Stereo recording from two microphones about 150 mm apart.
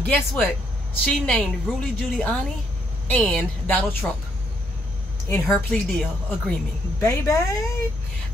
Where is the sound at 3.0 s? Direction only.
5° left (ahead or behind).